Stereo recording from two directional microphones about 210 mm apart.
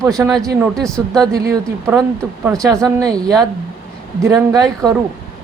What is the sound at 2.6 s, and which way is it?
Speech, 15° right (ahead or behind).